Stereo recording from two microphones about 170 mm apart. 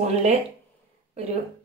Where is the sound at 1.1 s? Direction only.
35° right (ahead or behind).